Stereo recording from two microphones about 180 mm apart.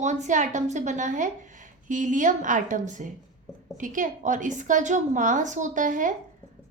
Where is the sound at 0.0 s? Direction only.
40° right (ahead or behind).